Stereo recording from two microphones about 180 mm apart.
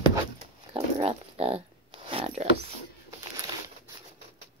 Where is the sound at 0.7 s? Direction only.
35° right (ahead or behind).